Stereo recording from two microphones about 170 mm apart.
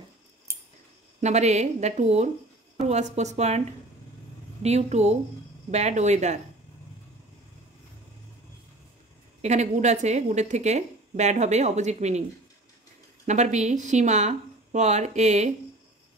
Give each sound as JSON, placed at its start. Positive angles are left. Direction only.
{"t": 0.5, "sound": "scissors", "side_deg": -15}
{"t": 1.2, "sound": "speech", "side_deg": -40}
{"t": 4.6, "sound": "speech", "side_deg": -40}
{"t": 9.4, "sound": "speech", "side_deg": -40}